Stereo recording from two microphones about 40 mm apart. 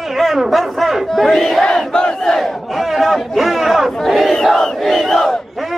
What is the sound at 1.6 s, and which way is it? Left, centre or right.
Crowd, centre.